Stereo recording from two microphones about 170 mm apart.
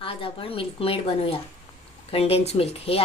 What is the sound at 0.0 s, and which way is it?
A woman's voice, 30° left (ahead or behind).